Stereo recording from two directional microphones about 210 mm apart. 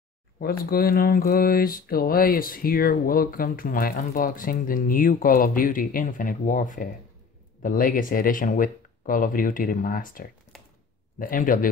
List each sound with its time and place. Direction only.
0.4 s mantra: 45° left (ahead or behind)
7.6 s speech: 40° left (ahead or behind)
10.5 s a sound: centre (ahead or behind)
11.1 s speech: 40° left (ahead or behind)